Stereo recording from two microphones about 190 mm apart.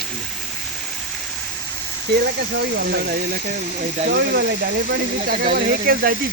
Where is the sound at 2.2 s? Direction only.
55° right (ahead or behind).